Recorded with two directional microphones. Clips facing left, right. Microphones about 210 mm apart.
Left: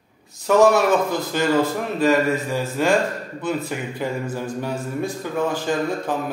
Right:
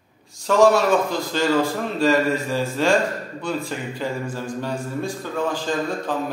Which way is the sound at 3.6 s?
20° left (ahead or behind).